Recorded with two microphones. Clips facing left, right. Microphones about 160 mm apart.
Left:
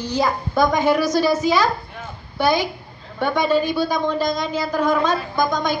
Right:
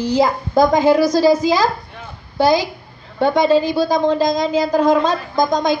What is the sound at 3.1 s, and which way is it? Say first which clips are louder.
Speech: right 6 dB; 35° right (ahead or behind).